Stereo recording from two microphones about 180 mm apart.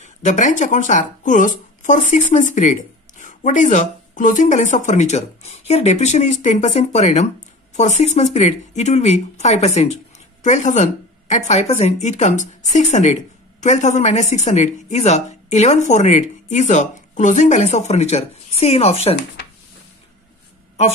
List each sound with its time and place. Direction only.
0.0 s speech: 40° left (ahead or behind)